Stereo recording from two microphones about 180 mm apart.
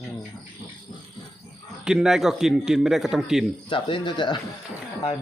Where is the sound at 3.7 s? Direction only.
30° left (ahead or behind).